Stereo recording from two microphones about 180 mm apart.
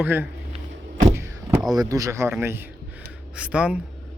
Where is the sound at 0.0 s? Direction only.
10° right (ahead or behind).